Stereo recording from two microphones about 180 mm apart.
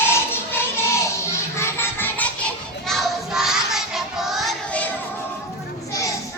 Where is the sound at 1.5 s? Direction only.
15° left (ahead or behind).